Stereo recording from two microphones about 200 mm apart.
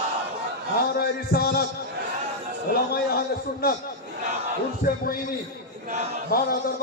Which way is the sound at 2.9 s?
50° left (ahead or behind).